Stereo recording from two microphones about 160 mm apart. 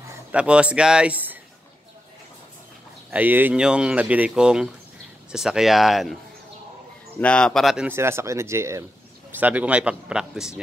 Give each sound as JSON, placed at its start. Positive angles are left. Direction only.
{"t": 0.3, "sound": "speech", "side_deg": -5}
{"t": 3.1, "sound": "speech", "side_deg": -10}
{"t": 7.2, "sound": "speech", "side_deg": 5}
{"t": 7.9, "sound": "speech", "side_deg": -15}